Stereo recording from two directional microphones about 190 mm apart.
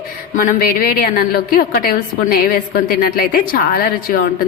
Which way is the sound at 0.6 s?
50° left (ahead or behind).